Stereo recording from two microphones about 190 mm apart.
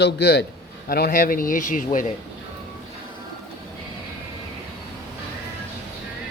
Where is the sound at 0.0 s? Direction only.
55° left (ahead or behind).